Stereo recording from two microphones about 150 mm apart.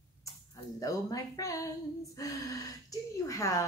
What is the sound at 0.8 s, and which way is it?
Speech, 20° left (ahead or behind).